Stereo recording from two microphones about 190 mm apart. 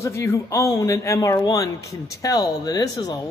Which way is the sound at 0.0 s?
15° left (ahead or behind).